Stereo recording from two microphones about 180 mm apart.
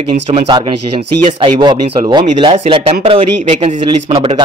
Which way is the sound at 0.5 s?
25° right (ahead or behind).